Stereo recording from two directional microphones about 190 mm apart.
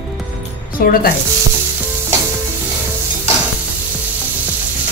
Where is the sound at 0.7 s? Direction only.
50° left (ahead or behind).